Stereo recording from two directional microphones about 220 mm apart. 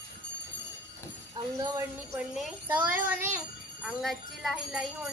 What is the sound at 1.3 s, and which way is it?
Speech, 15° right (ahead or behind).